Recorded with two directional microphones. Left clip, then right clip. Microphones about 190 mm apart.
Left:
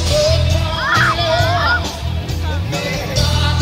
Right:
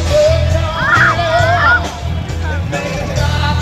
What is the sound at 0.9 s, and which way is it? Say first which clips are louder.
Music: right 4 dB; 35° left (ahead or behind).